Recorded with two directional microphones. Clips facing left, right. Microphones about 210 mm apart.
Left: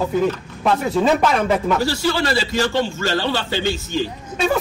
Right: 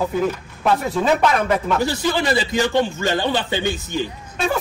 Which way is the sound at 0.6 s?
Centre (ahead or behind).